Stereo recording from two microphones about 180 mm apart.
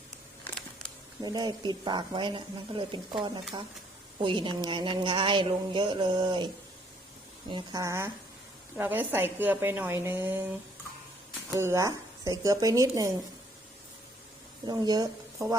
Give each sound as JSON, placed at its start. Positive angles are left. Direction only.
{"t": 1.2, "sound": "speech", "side_deg": -25}
{"t": 7.5, "sound": "a woman's voice", "side_deg": -20}
{"t": 11.6, "sound": "a woman's voice", "side_deg": -15}
{"t": 14.7, "sound": "speech", "side_deg": -20}